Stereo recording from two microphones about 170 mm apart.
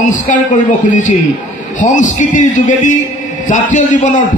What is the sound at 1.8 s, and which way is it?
A man's voice, 50° left (ahead or behind).